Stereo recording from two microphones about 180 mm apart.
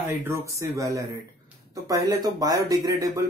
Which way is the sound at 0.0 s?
15° right (ahead or behind).